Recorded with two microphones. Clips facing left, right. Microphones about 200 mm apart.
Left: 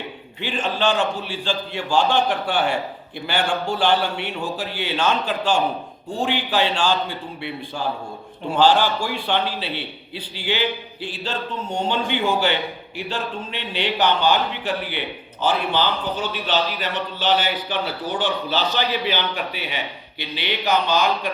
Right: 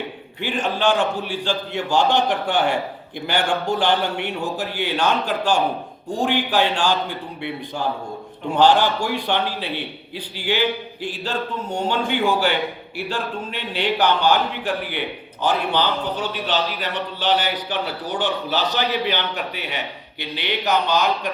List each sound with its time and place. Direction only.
0.4 s speech: 15° right (ahead or behind)
11.0 s speech: 10° right (ahead or behind)